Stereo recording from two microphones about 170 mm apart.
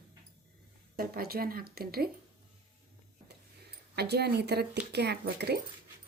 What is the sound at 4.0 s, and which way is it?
Speech, 70° right (ahead or behind).